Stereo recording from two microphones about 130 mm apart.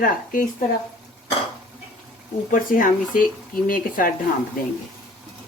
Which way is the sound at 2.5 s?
90° left.